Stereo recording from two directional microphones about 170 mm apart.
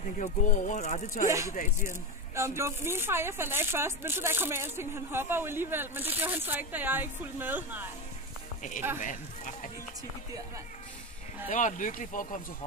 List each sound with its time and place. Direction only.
0.2 s speech: 50° left (ahead or behind)
1.2 s speech: 15° right (ahead or behind)
9.0 s speech: 50° left (ahead or behind)
11.4 s speech: 45° left (ahead or behind)